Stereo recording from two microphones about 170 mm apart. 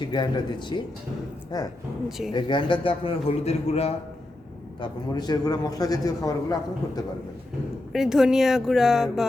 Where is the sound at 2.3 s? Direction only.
30° left (ahead or behind).